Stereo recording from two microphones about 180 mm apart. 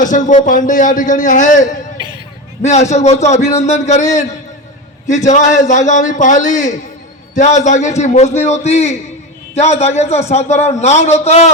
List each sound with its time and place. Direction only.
0.0 s a man's voice: 45° left (ahead or behind)
5.0 s a man's voice: 40° left (ahead or behind)